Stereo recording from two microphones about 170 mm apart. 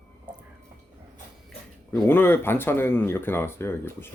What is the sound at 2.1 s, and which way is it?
Speech, 10° left (ahead or behind).